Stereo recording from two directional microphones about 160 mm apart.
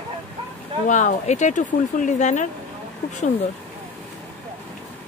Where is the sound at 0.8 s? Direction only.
50° left (ahead or behind).